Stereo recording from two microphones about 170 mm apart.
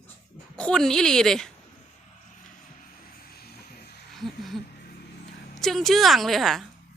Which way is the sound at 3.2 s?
65° left (ahead or behind).